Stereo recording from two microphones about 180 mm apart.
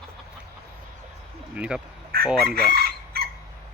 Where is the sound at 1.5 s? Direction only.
5° right (ahead or behind).